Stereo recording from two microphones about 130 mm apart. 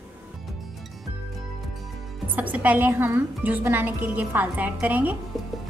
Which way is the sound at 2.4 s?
10° right (ahead or behind).